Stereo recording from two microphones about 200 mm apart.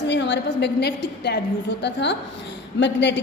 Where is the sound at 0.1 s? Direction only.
60° left (ahead or behind).